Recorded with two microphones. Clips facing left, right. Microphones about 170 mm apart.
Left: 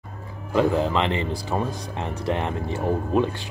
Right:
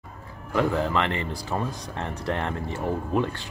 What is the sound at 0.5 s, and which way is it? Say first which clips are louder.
Speech: left 3 dB; 20° left (ahead or behind).